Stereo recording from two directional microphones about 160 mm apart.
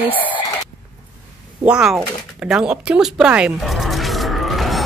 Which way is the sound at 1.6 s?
5° right (ahead or behind).